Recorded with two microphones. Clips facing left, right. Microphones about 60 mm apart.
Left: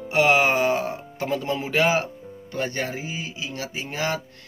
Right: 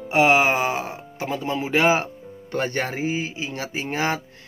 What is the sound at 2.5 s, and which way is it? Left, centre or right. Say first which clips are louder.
Speech: right 3 dB; right.